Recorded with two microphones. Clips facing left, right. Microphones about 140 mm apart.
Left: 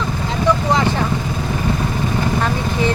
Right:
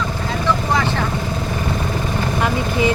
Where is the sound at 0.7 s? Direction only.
20° left (ahead or behind).